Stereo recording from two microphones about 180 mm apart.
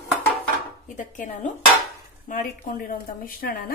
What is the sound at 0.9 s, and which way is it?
A woman's voice, 45° left (ahead or behind).